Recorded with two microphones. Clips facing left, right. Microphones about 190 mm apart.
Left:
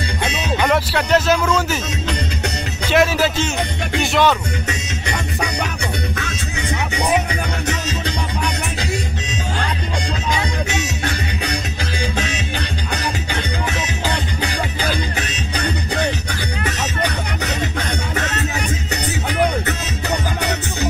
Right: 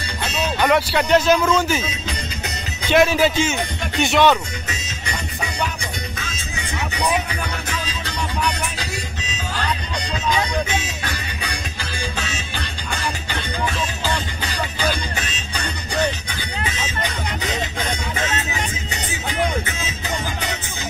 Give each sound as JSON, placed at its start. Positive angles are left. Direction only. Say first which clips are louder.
{"t": 0.6, "sound": "speech", "louder": "right 1 dB", "side_deg": 0}
{"t": 2.0, "sound": "music", "louder": "left 6 dB", "side_deg": 70}
{"t": 2.9, "sound": "speech", "louder": "right 1 dB", "side_deg": 0}
{"t": 4.6, "sound": "music", "louder": "left 5 dB", "side_deg": 70}
{"t": 16.6, "sound": "music", "louder": "left 4 dB", "side_deg": 70}
{"t": 19.6, "sound": "music", "louder": "left 5 dB", "side_deg": 70}